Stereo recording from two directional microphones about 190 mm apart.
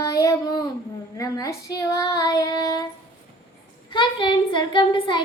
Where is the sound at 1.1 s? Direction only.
15° left (ahead or behind).